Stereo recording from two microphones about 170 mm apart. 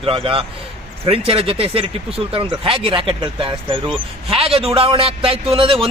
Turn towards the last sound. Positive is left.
turn(degrees=-30)  # may be behind; listen again after turning